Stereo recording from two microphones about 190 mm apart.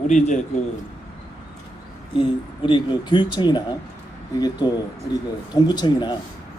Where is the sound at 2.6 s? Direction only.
25° left (ahead or behind).